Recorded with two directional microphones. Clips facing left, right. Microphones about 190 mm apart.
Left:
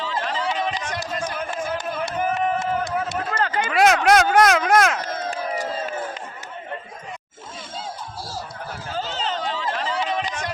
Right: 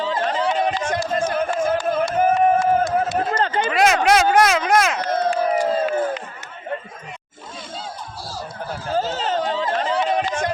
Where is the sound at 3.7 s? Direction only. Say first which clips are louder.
Left 1 dB; centre (ahead or behind).